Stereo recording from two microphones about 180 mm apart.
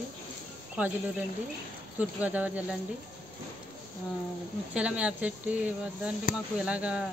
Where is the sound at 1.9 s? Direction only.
10° right (ahead or behind).